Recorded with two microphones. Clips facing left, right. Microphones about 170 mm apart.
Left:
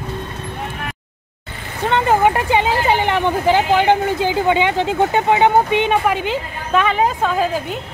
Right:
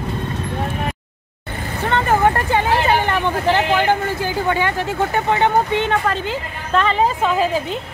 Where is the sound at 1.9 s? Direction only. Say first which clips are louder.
Left 2 dB; 15° left (ahead or behind).